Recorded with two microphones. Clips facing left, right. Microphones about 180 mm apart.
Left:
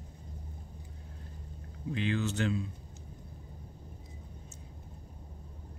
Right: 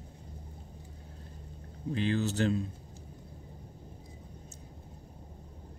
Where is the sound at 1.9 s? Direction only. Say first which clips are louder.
Right 2 dB; 35° right (ahead or behind).